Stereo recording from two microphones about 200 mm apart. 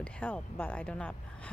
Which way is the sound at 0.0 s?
10° left (ahead or behind).